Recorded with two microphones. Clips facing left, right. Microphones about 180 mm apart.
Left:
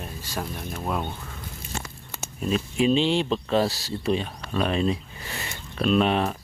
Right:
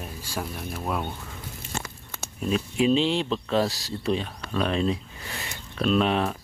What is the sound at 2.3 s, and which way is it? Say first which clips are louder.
Speech: even; centre (ahead or behind).